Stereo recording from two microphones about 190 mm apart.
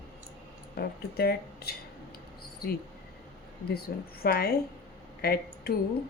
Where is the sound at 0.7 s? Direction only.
55° left (ahead or behind).